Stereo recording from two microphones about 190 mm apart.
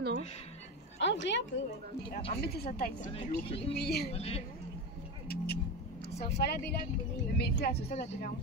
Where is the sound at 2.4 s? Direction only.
50° left (ahead or behind).